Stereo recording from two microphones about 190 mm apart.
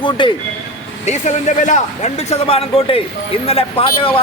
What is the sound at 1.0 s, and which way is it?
Speech, 40° left (ahead or behind).